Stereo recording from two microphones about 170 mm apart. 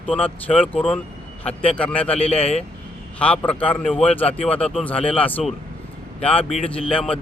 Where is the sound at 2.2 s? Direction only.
35° left (ahead or behind).